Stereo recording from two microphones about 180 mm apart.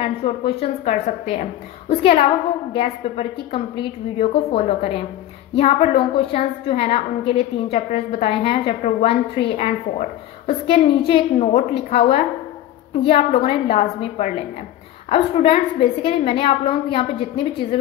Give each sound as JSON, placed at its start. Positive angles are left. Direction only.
{"t": 0.0, "sound": "a woman's voice", "side_deg": 30}